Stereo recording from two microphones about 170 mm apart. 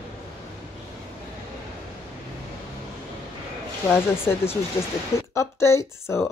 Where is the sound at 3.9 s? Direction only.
15° left (ahead or behind).